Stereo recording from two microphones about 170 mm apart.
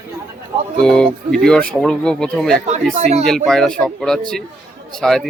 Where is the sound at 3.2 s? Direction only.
Centre (ahead or behind).